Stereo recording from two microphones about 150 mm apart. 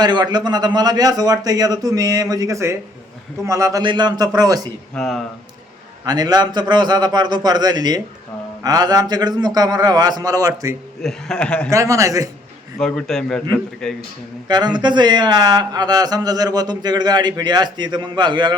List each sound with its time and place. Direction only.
0.0 s speech: 30° right (ahead or behind)
4.9 s a man's voice: centre (ahead or behind)
6.1 s speech: 25° right (ahead or behind)
11.0 s speech: 5° left (ahead or behind)
11.7 s speech: 20° right (ahead or behind)
12.8 s a man's voice: 5° left (ahead or behind)
14.4 s speech: 30° right (ahead or behind)